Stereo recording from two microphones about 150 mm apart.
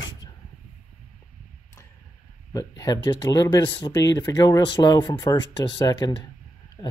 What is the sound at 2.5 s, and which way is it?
Speech, 25° left (ahead or behind).